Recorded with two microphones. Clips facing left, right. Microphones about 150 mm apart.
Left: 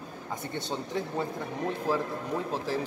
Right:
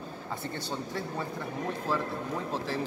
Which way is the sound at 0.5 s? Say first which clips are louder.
Left 6 dB; 20° left (ahead or behind).